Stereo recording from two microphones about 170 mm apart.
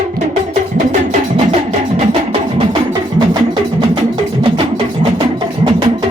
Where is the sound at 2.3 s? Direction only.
30° right (ahead or behind).